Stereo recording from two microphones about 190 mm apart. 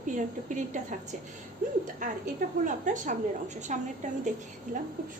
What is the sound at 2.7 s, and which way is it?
A woman's voice, 40° right (ahead or behind).